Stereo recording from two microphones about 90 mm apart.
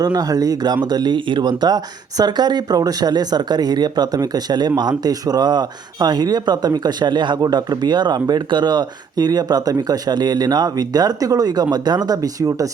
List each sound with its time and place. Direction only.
0.0 s speech: 45° right (ahead or behind)